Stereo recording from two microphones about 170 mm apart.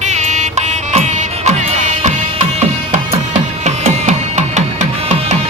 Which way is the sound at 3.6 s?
40° right (ahead or behind).